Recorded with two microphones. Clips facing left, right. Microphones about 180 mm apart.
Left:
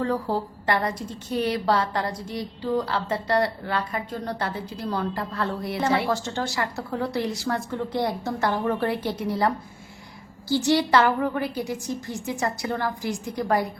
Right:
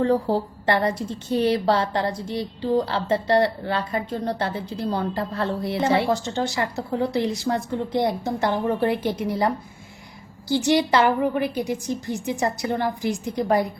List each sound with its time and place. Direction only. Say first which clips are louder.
0.0 s a woman's voice: right 5 dB; 30° right (ahead or behind)
10.5 s a woman's voice: right 1 dB; 20° right (ahead or behind)